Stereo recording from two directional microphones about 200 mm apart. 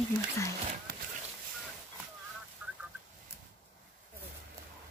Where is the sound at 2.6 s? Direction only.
10° right (ahead or behind).